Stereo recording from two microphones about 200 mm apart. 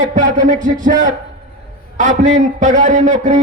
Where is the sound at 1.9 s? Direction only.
40° right (ahead or behind).